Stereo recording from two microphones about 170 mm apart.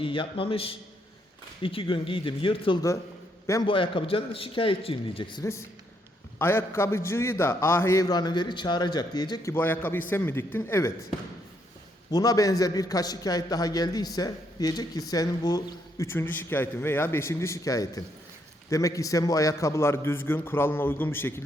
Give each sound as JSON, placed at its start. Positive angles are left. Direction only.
{"t": 0.0, "sound": "a man's voice", "side_deg": 30}
{"t": 6.4, "sound": "a man's voice", "side_deg": 15}
{"t": 12.1, "sound": "a man's voice", "side_deg": 20}